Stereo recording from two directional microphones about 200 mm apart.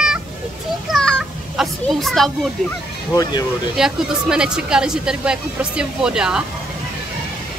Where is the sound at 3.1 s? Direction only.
20° left (ahead or behind).